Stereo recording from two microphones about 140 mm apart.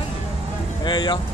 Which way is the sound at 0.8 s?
35° left (ahead or behind).